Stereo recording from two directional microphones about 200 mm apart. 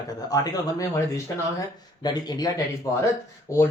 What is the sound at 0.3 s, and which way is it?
Speech, 15° left (ahead or behind).